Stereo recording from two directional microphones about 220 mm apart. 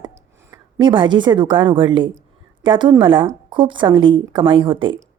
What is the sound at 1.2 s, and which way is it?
A woman's voice, 20° right (ahead or behind).